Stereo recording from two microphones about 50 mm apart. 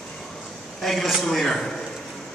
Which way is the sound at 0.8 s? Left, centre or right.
Centre.